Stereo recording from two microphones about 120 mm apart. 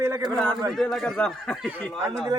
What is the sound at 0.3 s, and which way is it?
A man's voice, 10° left (ahead or behind).